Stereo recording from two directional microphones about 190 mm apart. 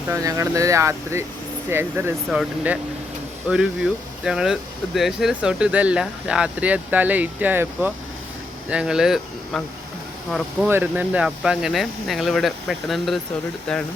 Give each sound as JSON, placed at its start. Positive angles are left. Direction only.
{"t": 0.1, "sound": "speech", "side_deg": -15}
{"t": 3.5, "sound": "speech", "side_deg": -5}
{"t": 10.7, "sound": "speech", "side_deg": -10}